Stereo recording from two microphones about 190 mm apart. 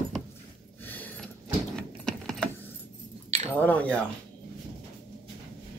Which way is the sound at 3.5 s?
10° left (ahead or behind).